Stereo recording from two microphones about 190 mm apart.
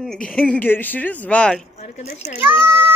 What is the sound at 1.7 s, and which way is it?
Speech, 35° left (ahead or behind).